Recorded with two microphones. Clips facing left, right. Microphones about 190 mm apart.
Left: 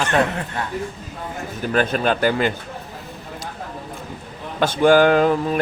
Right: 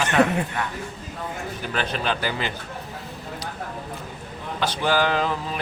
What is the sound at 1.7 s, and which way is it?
Speech, 50° left (ahead or behind).